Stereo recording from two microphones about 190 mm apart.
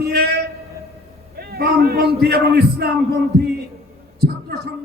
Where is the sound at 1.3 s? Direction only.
55° right (ahead or behind).